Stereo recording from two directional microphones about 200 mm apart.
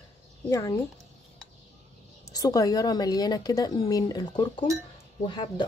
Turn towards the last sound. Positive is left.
turn(degrees=25)  # may be behind; listen again after turning